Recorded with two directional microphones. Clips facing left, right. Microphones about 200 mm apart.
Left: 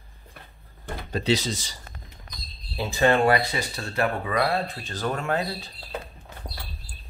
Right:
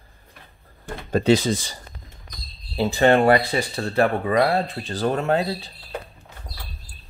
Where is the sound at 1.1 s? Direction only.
50° right (ahead or behind).